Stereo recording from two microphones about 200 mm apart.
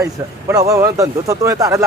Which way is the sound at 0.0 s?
15° right (ahead or behind).